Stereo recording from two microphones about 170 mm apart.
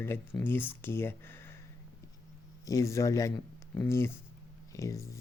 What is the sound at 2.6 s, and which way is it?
Speech, 20° left (ahead or behind).